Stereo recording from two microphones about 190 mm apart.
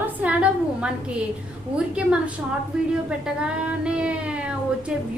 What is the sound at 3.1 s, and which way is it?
Child singing, 5° right (ahead or behind).